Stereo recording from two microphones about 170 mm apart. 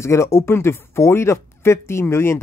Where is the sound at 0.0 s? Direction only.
15° left (ahead or behind).